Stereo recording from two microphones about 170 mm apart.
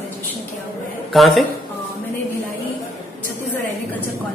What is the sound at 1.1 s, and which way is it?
Speech, centre (ahead or behind).